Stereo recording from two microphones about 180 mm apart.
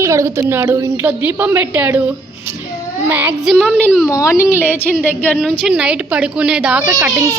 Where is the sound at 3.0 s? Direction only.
10° right (ahead or behind).